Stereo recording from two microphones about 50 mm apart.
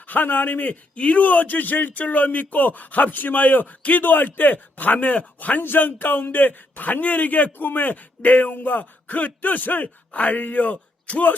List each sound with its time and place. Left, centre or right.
0.1 s a man's voice: left